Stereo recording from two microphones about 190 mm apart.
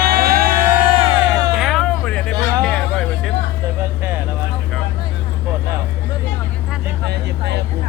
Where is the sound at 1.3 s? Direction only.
Centre (ahead or behind).